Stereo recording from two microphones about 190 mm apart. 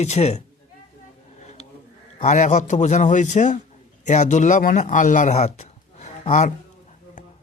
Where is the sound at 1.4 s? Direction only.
35° left (ahead or behind).